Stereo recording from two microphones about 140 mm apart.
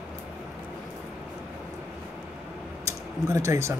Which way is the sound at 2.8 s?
20° right (ahead or behind).